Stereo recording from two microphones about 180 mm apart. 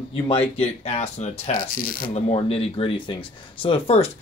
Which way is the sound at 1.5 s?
55° left (ahead or behind).